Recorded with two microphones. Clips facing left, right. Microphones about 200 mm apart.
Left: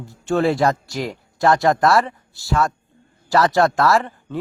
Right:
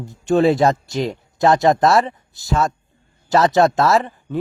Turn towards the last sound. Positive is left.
turn(degrees=-20)  # may be behind; listen again after turning